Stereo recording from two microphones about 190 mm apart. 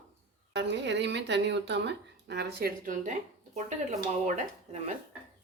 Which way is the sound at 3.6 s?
40° right (ahead or behind).